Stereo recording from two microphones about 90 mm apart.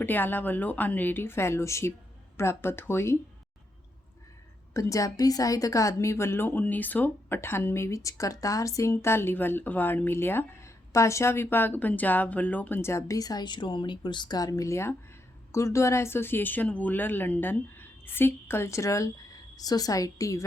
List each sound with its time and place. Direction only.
0.0 s speech: 20° left (ahead or behind)
4.7 s a woman's voice: 35° left (ahead or behind)